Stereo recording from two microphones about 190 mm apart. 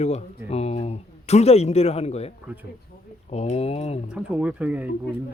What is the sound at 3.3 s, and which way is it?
Speech, 35° left (ahead or behind).